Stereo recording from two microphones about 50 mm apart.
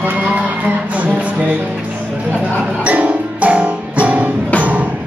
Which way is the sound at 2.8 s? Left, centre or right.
Right.